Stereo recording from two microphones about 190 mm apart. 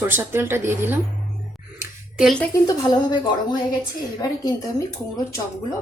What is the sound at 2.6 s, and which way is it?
Speech, 20° left (ahead or behind).